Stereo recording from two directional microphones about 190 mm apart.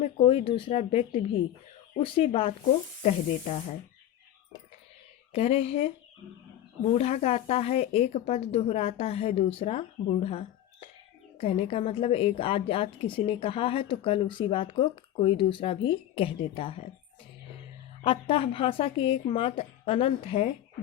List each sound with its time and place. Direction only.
0.0 s a woman's voice: 30° left (ahead or behind)
5.3 s a woman's voice: 30° left (ahead or behind)
18.0 s a woman's voice: 30° left (ahead or behind)